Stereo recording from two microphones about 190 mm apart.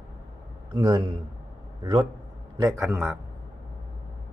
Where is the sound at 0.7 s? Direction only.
20° right (ahead or behind).